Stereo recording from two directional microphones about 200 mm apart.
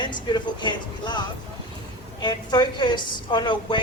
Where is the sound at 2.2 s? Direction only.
20° left (ahead or behind).